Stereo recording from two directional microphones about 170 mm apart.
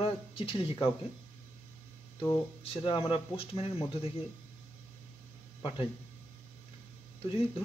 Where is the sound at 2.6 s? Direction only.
35° left (ahead or behind).